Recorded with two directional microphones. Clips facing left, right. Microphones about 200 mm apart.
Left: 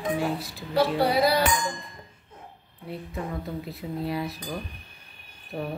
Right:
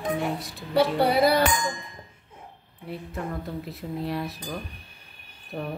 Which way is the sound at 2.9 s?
Centre (ahead or behind).